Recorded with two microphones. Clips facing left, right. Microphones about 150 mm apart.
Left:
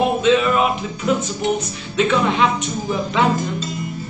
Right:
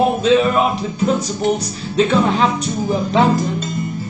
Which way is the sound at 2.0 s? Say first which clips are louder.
Right 2 dB; 35° right (ahead or behind).